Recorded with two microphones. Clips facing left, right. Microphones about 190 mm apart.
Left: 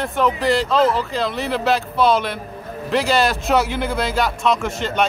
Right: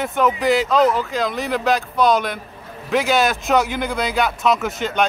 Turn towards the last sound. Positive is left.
turn(degrees=0)  # may be behind; listen again after turning